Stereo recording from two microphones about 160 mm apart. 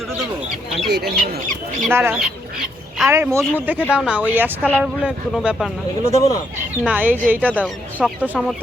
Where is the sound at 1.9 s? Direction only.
15° right (ahead or behind).